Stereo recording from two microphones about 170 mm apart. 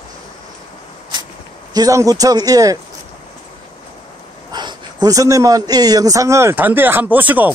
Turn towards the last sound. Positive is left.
turn(degrees=-10)  # may be behind; listen again after turning